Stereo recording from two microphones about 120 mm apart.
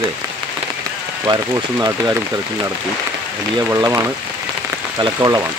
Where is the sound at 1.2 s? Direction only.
35° right (ahead or behind).